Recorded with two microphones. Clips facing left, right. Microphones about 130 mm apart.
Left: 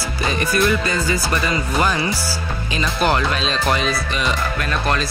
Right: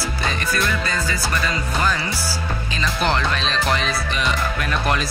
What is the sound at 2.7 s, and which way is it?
Speech, 10° left (ahead or behind).